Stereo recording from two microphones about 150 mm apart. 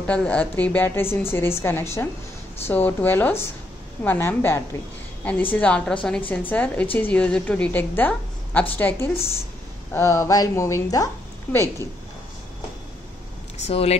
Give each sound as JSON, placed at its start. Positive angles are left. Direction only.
{"t": 0.0, "sound": "a woman's voice", "side_deg": 10}
{"t": 13.7, "sound": "speech", "side_deg": 45}